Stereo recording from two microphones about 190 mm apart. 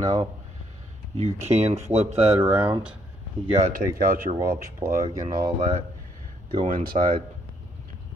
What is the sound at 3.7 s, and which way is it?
Speech, 50° right (ahead or behind).